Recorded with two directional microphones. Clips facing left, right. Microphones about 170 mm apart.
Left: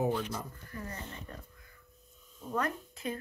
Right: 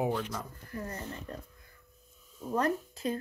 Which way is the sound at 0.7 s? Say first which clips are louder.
Right 6 dB; 40° right (ahead or behind).